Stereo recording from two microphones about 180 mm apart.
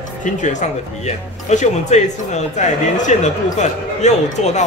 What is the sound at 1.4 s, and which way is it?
Speech, 40° left (ahead or behind).